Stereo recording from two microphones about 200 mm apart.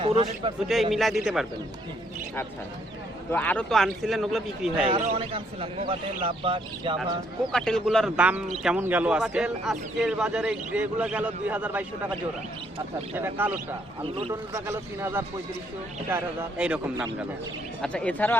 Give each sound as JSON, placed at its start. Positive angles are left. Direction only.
{"t": 0.0, "sound": "a man's voice", "side_deg": -30}
{"t": 0.7, "sound": "speech", "side_deg": 0}
{"t": 3.3, "sound": "speech", "side_deg": 5}
{"t": 5.1, "sound": "a man's voice", "side_deg": -25}
{"t": 7.5, "sound": "speech", "side_deg": 5}
{"t": 13.1, "sound": "a man's voice", "side_deg": -10}
{"t": 14.0, "sound": "a man's voice", "side_deg": -25}
{"t": 14.5, "sound": "a man's voice", "side_deg": -15}
{"t": 17.8, "sound": "speech", "side_deg": 5}